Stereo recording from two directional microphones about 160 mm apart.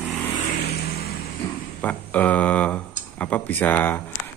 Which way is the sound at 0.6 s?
85° left.